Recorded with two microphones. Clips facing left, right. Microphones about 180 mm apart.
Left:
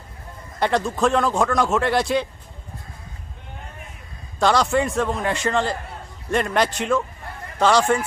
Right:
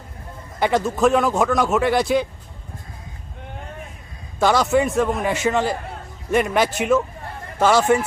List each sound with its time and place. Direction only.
0.6 s a man's voice: 5° right (ahead or behind)
4.4 s a man's voice: 5° right (ahead or behind)